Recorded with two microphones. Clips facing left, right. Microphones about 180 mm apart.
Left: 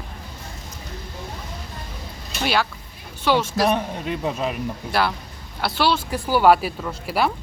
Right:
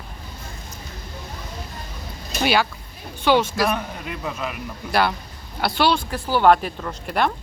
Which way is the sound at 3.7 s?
30° left (ahead or behind).